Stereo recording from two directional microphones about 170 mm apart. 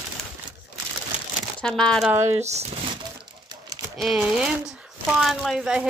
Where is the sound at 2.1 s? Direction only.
15° right (ahead or behind).